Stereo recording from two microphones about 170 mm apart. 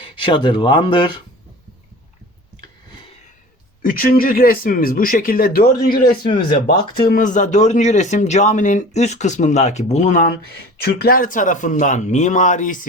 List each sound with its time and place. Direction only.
0.0 s speech: 30° left (ahead or behind)
3.8 s speech: 60° left (ahead or behind)
10.5 s speech: 70° left (ahead or behind); by 12.8 s 50° left (ahead or behind)